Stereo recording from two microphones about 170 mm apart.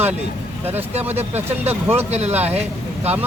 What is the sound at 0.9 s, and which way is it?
Speech, 40° right (ahead or behind).